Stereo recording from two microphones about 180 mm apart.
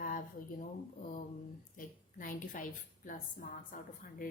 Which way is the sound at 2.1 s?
50° left (ahead or behind).